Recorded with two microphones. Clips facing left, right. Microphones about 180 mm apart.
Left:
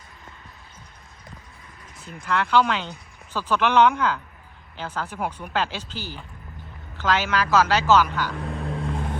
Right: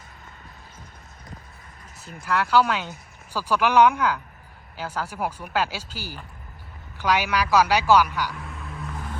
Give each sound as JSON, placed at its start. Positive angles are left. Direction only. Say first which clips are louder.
{"t": 2.1, "sound": "speech", "louder": "even", "side_deg": -5}
{"t": 8.7, "sound": "vehicle", "louder": "left 5 dB", "side_deg": 30}